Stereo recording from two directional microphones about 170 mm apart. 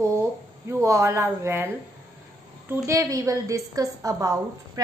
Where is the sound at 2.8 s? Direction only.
15° right (ahead or behind).